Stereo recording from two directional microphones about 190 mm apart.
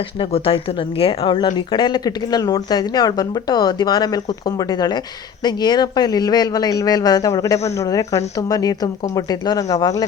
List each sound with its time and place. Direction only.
0.2 s a woman's voice: 30° left (ahead or behind)